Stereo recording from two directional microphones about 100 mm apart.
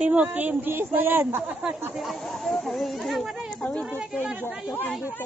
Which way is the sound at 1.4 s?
10° right (ahead or behind).